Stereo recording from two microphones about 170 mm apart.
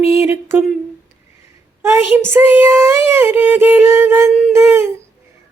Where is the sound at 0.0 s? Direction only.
15° right (ahead or behind).